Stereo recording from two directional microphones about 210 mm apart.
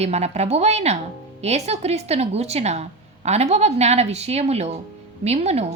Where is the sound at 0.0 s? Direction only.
30° right (ahead or behind).